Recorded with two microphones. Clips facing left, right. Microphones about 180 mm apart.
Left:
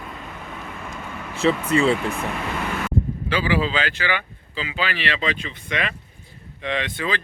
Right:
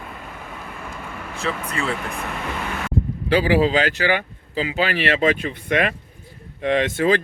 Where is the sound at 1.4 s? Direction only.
30° left (ahead or behind).